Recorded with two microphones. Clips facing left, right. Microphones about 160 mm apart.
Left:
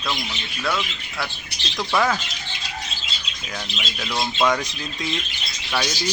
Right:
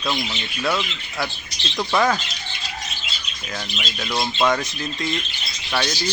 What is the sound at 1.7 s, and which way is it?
Speech, 10° right (ahead or behind).